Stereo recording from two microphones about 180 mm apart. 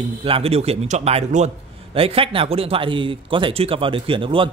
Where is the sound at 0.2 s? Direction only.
30° right (ahead or behind).